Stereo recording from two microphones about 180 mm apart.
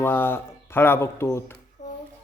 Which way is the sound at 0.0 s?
10° left (ahead or behind).